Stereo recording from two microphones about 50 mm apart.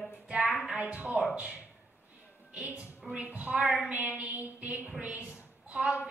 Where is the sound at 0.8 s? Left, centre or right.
Right.